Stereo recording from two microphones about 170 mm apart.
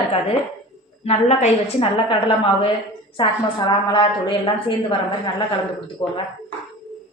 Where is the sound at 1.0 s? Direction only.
40° left (ahead or behind).